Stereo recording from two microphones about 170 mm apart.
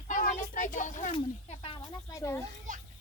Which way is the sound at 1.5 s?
30° left (ahead or behind).